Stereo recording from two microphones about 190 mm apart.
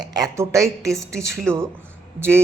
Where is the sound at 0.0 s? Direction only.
20° right (ahead or behind).